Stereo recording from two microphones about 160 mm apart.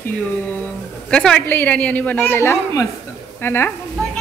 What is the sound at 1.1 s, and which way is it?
A woman's voice, 5° left (ahead or behind).